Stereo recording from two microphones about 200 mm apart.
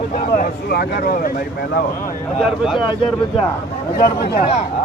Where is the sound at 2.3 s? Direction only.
Centre (ahead or behind).